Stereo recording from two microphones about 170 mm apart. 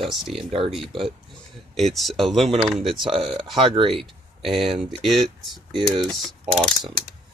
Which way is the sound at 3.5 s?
35° right (ahead or behind).